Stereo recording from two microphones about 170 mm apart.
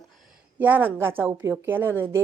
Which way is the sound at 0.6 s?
10° right (ahead or behind).